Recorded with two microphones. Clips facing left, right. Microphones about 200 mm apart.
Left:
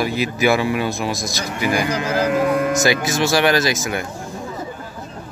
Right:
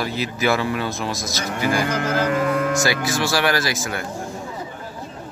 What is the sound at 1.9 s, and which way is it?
Speech, 55° right (ahead or behind).